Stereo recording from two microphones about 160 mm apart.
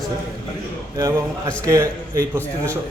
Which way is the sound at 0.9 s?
20° right (ahead or behind).